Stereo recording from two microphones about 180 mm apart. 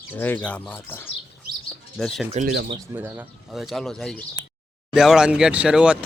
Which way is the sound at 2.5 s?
60° right (ahead or behind).